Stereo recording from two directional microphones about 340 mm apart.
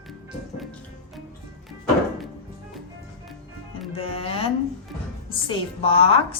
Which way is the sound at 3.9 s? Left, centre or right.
Centre.